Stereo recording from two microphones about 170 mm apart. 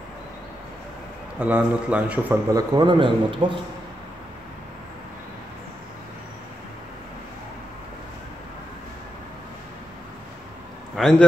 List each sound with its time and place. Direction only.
1.4 s a man's voice: 10° right (ahead or behind)
2.5 s a man's voice: 25° right (ahead or behind)
11.0 s a man's voice: 5° left (ahead or behind)